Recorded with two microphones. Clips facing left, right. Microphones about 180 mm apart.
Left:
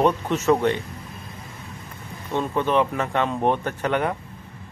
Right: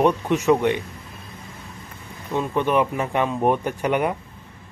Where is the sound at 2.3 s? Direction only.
10° right (ahead or behind).